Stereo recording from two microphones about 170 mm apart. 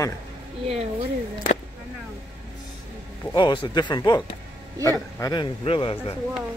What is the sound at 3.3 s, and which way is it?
A man's voice, 25° left (ahead or behind).